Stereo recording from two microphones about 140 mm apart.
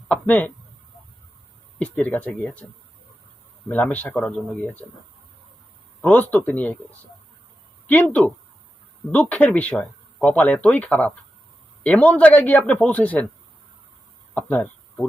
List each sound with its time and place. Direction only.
0.1 s a sound: 10° left (ahead or behind)
1.8 s speech: 10° left (ahead or behind)
3.7 s speech: 10° left (ahead or behind)
6.0 s speech: 10° left (ahead or behind)
7.9 s speech: 10° left (ahead or behind)
14.3 s speech: 10° left (ahead or behind)